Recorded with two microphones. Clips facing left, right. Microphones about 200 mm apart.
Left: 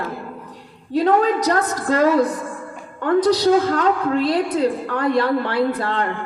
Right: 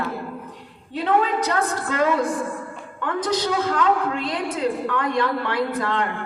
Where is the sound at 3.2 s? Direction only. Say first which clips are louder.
Left 5 dB; 35° left (ahead or behind).